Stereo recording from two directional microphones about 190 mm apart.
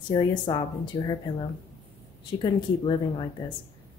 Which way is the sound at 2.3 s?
25° left (ahead or behind).